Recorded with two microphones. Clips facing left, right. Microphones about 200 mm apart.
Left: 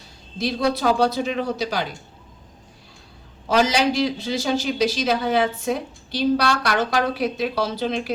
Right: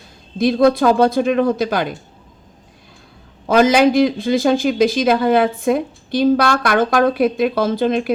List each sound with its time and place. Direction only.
0.3 s a man's voice: 50° right (ahead or behind)
3.5 s a man's voice: 55° right (ahead or behind)